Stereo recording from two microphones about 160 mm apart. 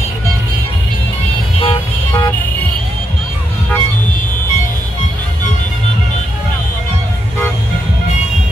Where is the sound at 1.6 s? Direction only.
30° left (ahead or behind).